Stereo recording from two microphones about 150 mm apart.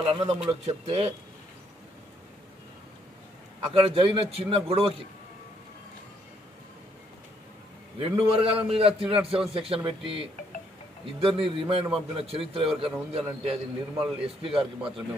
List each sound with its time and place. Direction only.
0.0 s a man's voice: 40° right (ahead or behind)
3.7 s a man's voice: 40° right (ahead or behind)
8.0 s a man's voice: 40° right (ahead or behind)
9.0 s a man's voice: 5° right (ahead or behind)
9.5 s a man's voice: 40° right (ahead or behind)
14.5 s speech: 5° right (ahead or behind)